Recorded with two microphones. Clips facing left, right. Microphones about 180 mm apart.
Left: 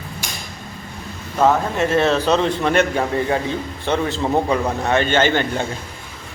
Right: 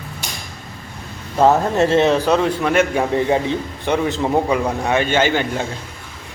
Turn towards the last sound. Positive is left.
turn(degrees=-10)  # may be behind; listen again after turning